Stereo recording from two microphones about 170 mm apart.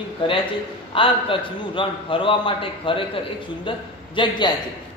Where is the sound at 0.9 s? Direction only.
30° left (ahead or behind).